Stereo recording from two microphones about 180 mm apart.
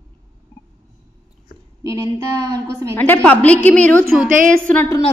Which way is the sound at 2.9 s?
10° left (ahead or behind).